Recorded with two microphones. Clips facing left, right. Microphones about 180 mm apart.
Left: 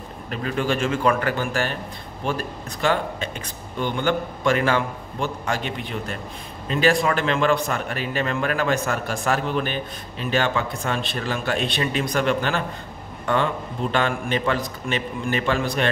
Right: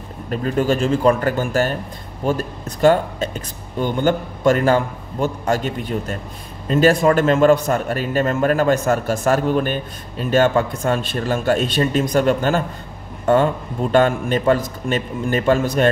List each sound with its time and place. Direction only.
0.3 s a man's voice: 40° right (ahead or behind)